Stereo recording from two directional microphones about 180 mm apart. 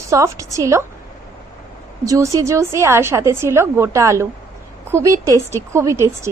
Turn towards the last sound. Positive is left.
turn(degrees=-15)  # may be behind; listen again after turning